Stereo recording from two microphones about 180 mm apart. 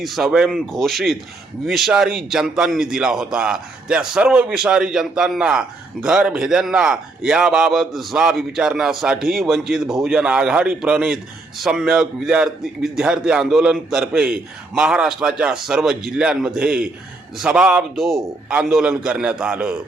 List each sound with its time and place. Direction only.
0.0 s a man's voice: centre (ahead or behind)